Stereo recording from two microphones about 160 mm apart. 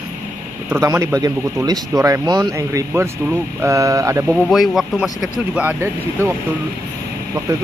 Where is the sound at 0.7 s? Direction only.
15° right (ahead or behind).